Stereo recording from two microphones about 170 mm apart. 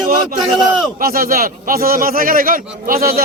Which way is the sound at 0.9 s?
60° right (ahead or behind).